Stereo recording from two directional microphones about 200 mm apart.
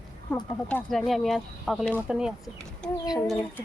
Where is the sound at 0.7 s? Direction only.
5° left (ahead or behind).